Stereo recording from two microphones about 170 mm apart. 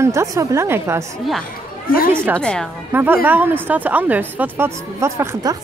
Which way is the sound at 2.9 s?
10° right (ahead or behind).